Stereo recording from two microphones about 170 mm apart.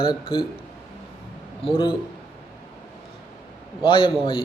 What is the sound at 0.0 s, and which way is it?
Speech, 30° left (ahead or behind).